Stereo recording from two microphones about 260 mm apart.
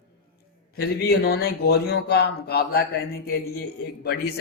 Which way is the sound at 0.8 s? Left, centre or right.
Left.